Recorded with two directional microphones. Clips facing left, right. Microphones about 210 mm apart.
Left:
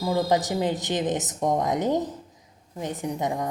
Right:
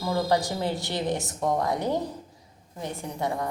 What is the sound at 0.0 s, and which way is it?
A woman's voice, 20° left (ahead or behind).